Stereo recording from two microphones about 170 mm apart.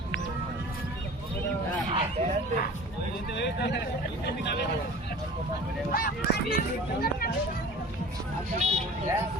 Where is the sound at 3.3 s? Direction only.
85° left.